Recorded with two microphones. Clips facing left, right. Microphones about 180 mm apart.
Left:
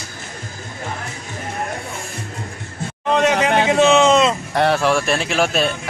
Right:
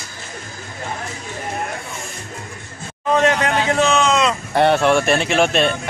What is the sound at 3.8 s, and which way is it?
Speech, 25° left (ahead or behind).